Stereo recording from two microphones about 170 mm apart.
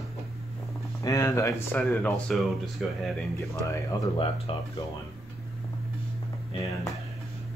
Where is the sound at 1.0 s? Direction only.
20° left (ahead or behind); by 3.2 s centre (ahead or behind).